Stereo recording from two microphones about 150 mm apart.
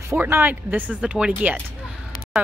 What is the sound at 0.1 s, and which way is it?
A woman's voice, 15° right (ahead or behind).